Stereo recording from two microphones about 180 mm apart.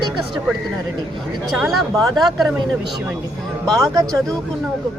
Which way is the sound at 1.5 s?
Centre (ahead or behind).